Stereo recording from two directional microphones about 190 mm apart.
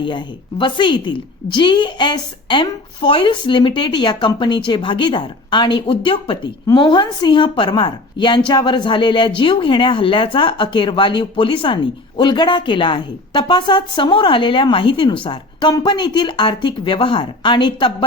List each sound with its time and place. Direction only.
0.0 s speech: 25° left (ahead or behind)